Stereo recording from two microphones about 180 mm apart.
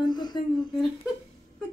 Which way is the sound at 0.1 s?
25° left (ahead or behind).